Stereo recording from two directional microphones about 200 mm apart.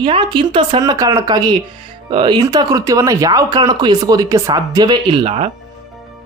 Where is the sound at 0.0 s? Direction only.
25° right (ahead or behind).